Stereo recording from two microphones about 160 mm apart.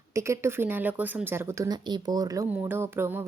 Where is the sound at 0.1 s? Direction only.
20° right (ahead or behind).